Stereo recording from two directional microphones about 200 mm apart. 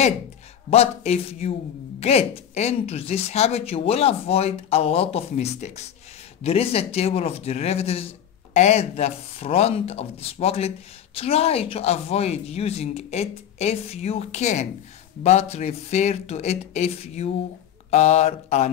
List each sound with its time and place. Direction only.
0.7 s speech: 30° left (ahead or behind)